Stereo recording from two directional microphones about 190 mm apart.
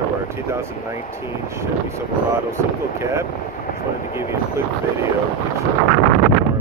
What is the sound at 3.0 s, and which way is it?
Speech, 15° right (ahead or behind).